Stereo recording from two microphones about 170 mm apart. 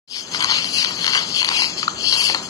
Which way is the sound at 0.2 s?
20° left (ahead or behind).